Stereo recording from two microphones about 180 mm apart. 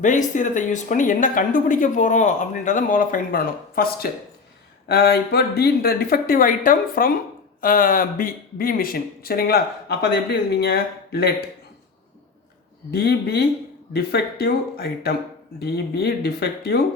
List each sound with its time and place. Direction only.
0.0 s speech: 45° left (ahead or behind); by 11.4 s 60° left (ahead or behind)
12.9 s speech: 60° left (ahead or behind)